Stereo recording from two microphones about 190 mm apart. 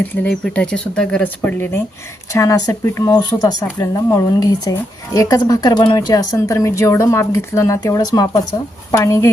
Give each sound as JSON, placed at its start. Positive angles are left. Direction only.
{"t": 0.0, "sound": "speech", "side_deg": 10}